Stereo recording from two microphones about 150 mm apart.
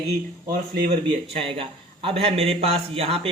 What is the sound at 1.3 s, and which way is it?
Speech, 35° right (ahead or behind).